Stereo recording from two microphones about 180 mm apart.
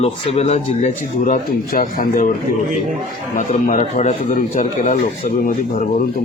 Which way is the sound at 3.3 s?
45° left (ahead or behind).